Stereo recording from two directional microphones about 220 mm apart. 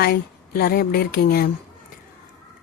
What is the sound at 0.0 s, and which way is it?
Speech, 45° left (ahead or behind).